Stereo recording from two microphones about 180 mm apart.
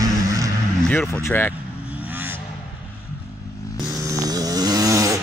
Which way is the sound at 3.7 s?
20° right (ahead or behind).